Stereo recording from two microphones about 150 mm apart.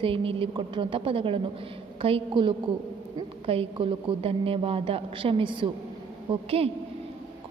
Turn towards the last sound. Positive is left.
turn(degrees=-40)  # may be behind; listen again after turning